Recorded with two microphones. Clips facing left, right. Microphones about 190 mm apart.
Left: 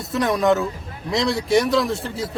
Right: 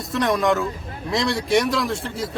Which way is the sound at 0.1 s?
Centre (ahead or behind).